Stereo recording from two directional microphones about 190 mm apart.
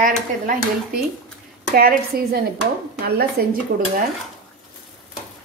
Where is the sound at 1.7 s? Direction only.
50° right (ahead or behind).